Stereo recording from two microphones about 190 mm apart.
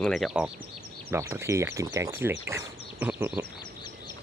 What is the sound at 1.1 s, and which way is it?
Speech, 15° right (ahead or behind).